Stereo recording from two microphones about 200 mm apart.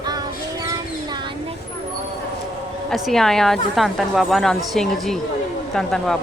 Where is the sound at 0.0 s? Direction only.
20° right (ahead or behind).